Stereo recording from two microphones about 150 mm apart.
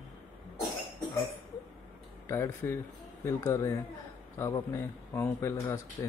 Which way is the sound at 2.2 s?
20° left (ahead or behind).